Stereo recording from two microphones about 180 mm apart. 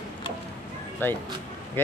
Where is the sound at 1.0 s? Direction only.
10° left (ahead or behind).